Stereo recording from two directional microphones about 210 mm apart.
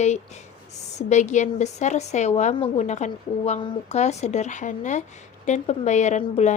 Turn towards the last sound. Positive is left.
turn(degrees=35)  # may be behind; listen again after turning